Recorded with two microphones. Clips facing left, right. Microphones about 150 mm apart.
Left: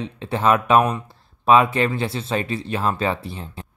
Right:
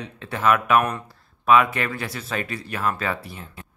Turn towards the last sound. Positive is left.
turn(degrees=25)  # may be behind; listen again after turning